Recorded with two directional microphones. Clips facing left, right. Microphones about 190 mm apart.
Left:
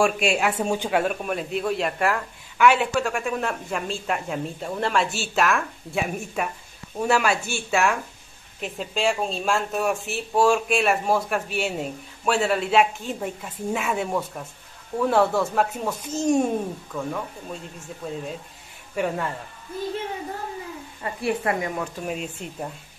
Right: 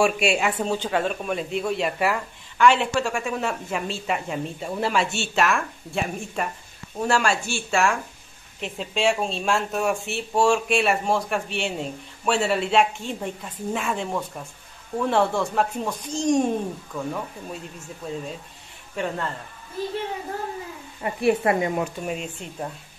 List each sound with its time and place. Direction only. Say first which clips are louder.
0.0 s speech: even; centre (ahead or behind)
21.0 s speech: right 5 dB; 25° right (ahead or behind)
21.9 s speech: even; centre (ahead or behind)